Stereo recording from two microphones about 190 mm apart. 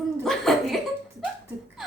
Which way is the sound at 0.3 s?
Centre (ahead or behind).